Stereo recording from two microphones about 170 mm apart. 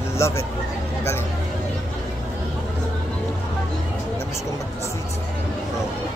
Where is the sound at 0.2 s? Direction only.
15° left (ahead or behind).